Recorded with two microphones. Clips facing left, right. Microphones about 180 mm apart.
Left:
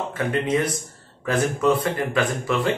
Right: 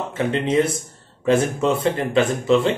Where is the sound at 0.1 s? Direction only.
25° right (ahead or behind).